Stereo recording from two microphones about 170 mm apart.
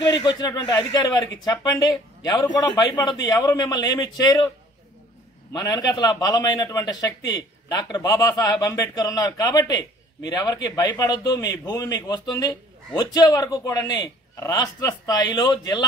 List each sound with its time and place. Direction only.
0.2 s speech: 25° left (ahead or behind)
5.5 s speech: 20° left (ahead or behind)